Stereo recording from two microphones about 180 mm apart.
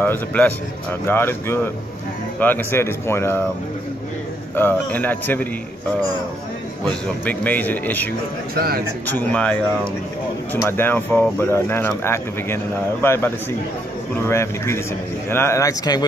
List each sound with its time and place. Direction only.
0.0 s speech: 10° left (ahead or behind)
4.6 s speech: 10° left (ahead or behind)
6.8 s speech: 10° left (ahead or behind)
8.5 s a man's voice: 55° right (ahead or behind)
9.0 s speech: 10° left (ahead or behind)